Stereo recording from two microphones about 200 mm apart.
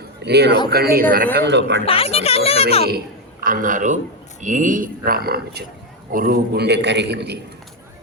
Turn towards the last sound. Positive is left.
turn(degrees=-55)  # may be behind; listen again after turning